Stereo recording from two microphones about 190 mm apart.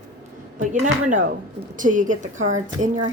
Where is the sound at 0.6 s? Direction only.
40° right (ahead or behind).